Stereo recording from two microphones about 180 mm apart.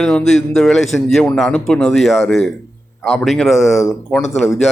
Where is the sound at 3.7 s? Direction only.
15° left (ahead or behind).